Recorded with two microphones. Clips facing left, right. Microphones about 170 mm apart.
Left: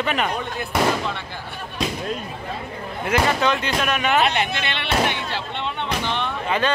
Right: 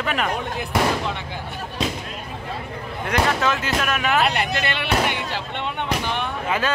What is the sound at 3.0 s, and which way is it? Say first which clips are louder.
Speech: left 1 dB; centre (ahead or behind).